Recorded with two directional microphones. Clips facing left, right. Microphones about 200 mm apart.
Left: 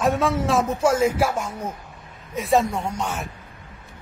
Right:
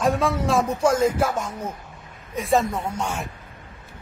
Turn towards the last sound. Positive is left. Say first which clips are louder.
# even
turn(degrees=-10)  # may be behind; listen again after turning